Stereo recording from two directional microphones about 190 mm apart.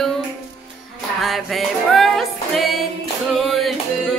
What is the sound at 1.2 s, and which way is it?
Music, centre (ahead or behind).